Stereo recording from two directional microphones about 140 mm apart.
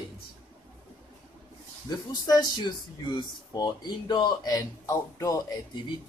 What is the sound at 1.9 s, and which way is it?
Speech, 25° left (ahead or behind).